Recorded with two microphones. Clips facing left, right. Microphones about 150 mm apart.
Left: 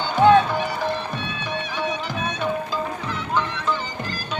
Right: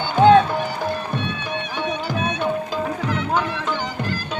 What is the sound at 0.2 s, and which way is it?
Music, 55° right (ahead or behind).